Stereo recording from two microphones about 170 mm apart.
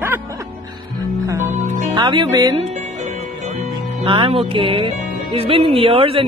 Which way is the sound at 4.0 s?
30° right (ahead or behind).